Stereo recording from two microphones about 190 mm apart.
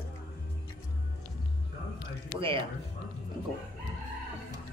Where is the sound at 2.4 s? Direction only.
30° right (ahead or behind).